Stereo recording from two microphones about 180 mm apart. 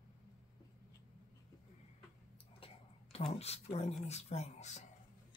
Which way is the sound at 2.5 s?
30° left (ahead or behind).